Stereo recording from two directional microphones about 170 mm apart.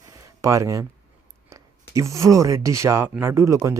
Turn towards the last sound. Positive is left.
turn(degrees=-20)  # may be behind; listen again after turning